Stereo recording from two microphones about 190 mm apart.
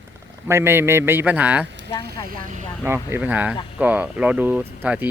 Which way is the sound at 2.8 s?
15° right (ahead or behind).